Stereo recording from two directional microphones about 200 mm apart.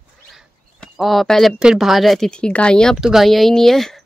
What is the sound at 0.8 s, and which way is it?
Speech, centre (ahead or behind).